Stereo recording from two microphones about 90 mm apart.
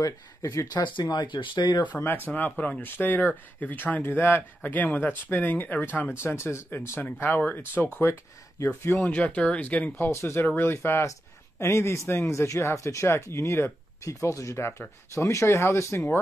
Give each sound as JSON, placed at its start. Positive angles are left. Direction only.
{"t": 0.0, "sound": "speech", "side_deg": 40}
{"t": 1.1, "sound": "speech", "side_deg": 55}
{"t": 2.0, "sound": "speech", "side_deg": 25}